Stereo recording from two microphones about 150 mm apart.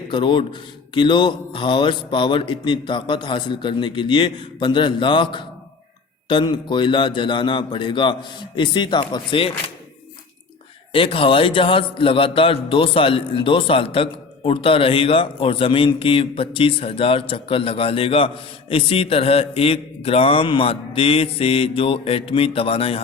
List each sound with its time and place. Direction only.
0.1 s a man's voice: 30° left (ahead or behind)
10.9 s a man's voice: 35° left (ahead or behind)